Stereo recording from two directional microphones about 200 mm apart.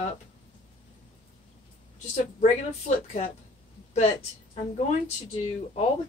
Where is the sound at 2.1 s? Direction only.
35° left (ahead or behind).